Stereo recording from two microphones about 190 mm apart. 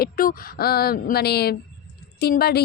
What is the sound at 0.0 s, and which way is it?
A woman's voice, 50° left (ahead or behind).